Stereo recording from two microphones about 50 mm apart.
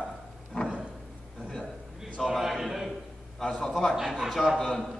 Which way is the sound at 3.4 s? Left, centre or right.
Centre.